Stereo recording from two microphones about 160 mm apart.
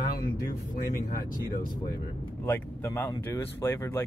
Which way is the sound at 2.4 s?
15° left (ahead or behind).